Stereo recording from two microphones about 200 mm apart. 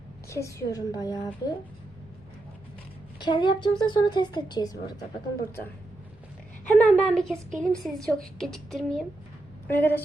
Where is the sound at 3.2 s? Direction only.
20° left (ahead or behind).